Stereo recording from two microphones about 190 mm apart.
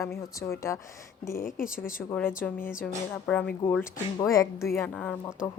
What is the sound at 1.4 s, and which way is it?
Speech, 45° left (ahead or behind).